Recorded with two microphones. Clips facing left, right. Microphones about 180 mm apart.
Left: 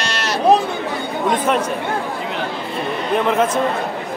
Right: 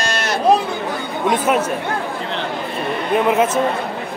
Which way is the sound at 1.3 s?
5° right (ahead or behind).